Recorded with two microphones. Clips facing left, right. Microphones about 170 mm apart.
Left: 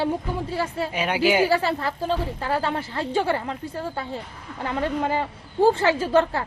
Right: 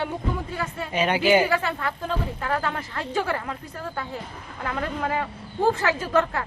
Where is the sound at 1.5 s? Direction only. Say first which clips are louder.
Left 3 dB; 35° left (ahead or behind).